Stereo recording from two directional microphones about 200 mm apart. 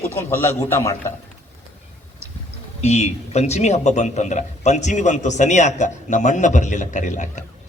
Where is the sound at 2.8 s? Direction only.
35° left (ahead or behind).